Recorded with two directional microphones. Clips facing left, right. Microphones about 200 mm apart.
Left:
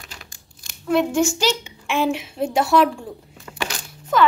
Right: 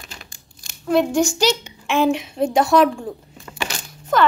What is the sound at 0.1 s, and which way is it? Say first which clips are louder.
Crumpling: right 1 dB; 25° right (ahead or behind).